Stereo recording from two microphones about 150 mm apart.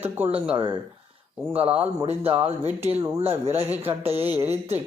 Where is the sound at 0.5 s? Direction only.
30° right (ahead or behind).